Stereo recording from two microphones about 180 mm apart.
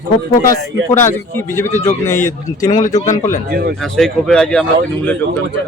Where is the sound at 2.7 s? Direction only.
45° left (ahead or behind).